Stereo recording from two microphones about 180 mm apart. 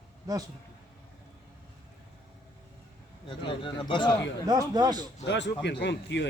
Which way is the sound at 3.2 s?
25° left (ahead or behind).